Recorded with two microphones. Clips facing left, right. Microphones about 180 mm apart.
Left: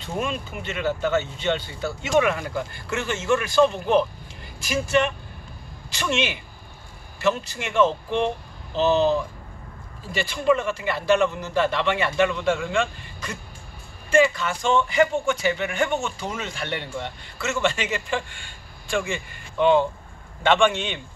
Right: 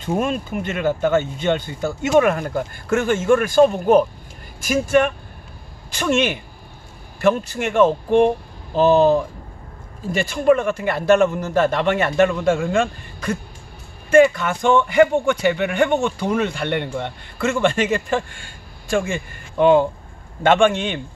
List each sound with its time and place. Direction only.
0.0 s a man's voice: 45° right (ahead or behind)